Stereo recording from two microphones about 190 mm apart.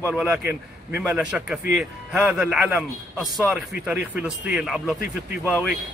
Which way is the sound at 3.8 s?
10° right (ahead or behind).